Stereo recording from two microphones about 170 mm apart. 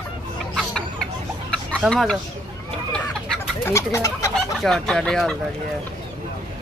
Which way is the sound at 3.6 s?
15° left (ahead or behind).